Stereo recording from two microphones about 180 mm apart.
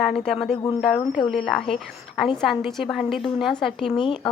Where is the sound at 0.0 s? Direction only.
Centre (ahead or behind).